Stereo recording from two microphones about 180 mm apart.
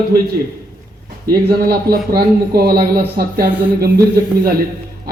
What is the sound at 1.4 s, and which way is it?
A man's voice, 60° right (ahead or behind).